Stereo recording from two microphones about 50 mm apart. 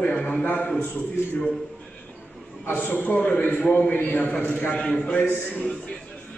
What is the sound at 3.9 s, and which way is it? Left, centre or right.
Speech, left.